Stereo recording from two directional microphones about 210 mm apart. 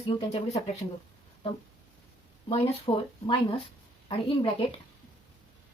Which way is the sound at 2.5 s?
25° left (ahead or behind).